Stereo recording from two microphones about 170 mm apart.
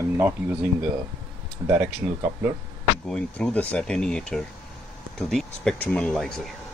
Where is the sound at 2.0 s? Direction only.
20° right (ahead or behind).